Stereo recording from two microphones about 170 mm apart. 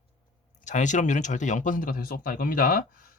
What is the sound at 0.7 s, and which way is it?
Speech, 45° left (ahead or behind).